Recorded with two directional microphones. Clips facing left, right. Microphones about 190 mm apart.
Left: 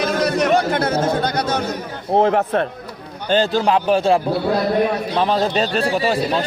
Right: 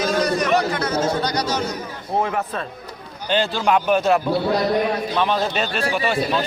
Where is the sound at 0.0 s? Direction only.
60° left (ahead or behind).